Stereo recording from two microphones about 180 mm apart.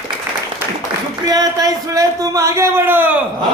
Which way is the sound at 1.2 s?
20° right (ahead or behind).